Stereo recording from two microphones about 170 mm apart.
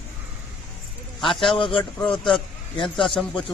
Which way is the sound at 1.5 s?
30° left (ahead or behind).